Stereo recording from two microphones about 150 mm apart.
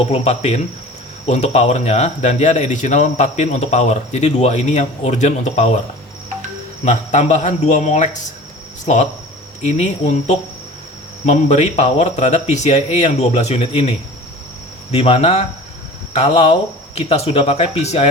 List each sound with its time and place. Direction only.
0.1 s speech: 45° left (ahead or behind)
6.8 s speech: 50° left (ahead or behind)
14.9 s speech: 40° left (ahead or behind)